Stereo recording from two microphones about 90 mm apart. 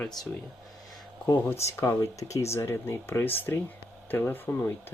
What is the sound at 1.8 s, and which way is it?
Speech, 35° left (ahead or behind).